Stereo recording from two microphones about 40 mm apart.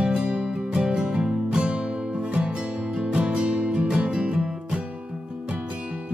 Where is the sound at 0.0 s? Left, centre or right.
Right.